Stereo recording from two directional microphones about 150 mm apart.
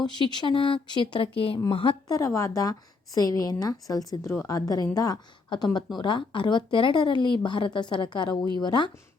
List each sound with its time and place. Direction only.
0.0 s a woman's voice: 30° left (ahead or behind)